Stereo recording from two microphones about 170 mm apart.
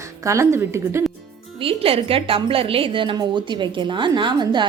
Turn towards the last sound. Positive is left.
turn(degrees=-25)  # may be behind; listen again after turning